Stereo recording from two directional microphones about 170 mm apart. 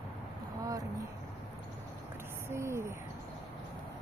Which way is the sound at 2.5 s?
15° right (ahead or behind).